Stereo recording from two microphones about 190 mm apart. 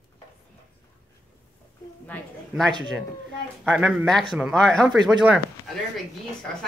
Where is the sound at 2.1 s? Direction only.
5° left (ahead or behind).